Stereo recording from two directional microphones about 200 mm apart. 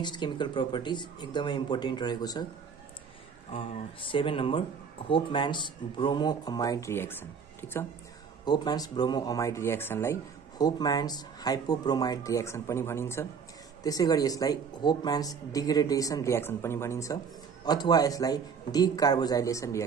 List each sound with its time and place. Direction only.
0.0 s speech: 20° left (ahead or behind)
3.5 s speech: 25° left (ahead or behind)